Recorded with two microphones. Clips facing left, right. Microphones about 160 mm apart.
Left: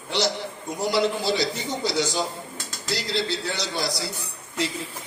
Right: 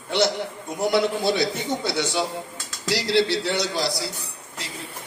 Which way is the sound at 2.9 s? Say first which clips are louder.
Right 6 dB; 90° right.